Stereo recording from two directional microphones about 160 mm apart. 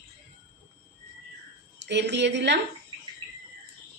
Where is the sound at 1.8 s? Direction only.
90° right.